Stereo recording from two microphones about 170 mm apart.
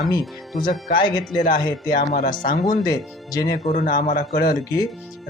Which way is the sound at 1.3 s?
50° left (ahead or behind).